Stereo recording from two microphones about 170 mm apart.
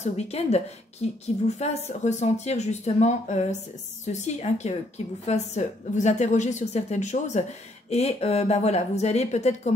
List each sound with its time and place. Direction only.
0.0 s a woman's voice: 40° left (ahead or behind)